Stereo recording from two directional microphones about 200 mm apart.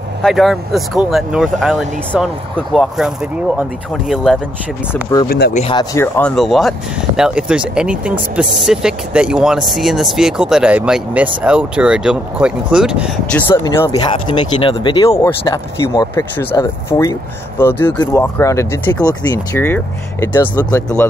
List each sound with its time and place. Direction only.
0.2 s speech: centre (ahead or behind)
5.5 s speech: 35° left (ahead or behind)
5.8 s speech: 10° left (ahead or behind); by 13.4 s 5° right (ahead or behind)
13.7 s speech: 20° left (ahead or behind)